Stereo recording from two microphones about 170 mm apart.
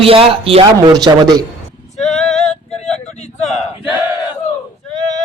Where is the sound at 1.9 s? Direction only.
40° left (ahead or behind).